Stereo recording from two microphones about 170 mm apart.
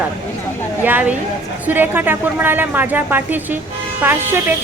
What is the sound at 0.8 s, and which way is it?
Speech, 10° right (ahead or behind).